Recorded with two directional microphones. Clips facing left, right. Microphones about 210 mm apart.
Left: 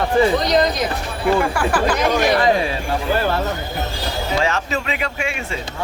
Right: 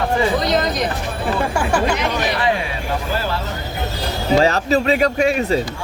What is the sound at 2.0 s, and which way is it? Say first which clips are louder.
Speech: left 4 dB; 40° left (ahead or behind).